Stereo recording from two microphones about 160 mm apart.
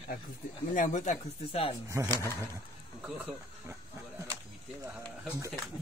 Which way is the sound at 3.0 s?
10° right (ahead or behind).